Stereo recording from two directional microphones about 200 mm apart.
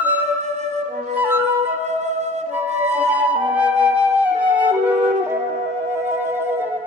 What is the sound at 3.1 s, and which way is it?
Flute, 5° right (ahead or behind).